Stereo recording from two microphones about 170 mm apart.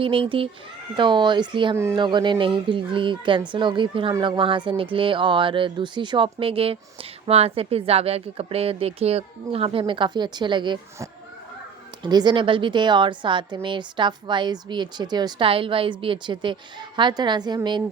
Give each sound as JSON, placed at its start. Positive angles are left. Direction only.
{"t": 0.0, "sound": "a woman's voice", "side_deg": -30}